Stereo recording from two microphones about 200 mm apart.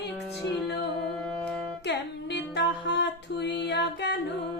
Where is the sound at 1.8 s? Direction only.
60° left (ahead or behind).